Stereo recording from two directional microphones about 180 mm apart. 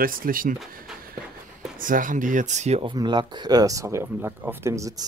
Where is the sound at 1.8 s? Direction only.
50° right (ahead or behind).